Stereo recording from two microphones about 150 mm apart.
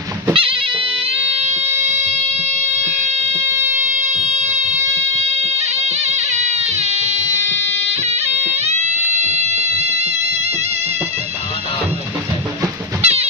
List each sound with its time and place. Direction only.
0.3 s music: 35° right (ahead or behind)
1.1 s fire alarm: 45° right (ahead or behind)
3.3 s fire alarm: 15° right (ahead or behind)
5.2 s music: 45° right (ahead or behind)
13.0 s music: 45° right (ahead or behind)